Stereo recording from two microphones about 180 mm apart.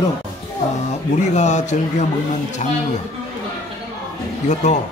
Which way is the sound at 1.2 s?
40° left (ahead or behind).